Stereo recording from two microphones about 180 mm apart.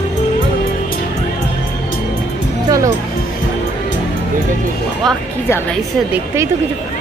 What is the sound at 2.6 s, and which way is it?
Music, 20° right (ahead or behind).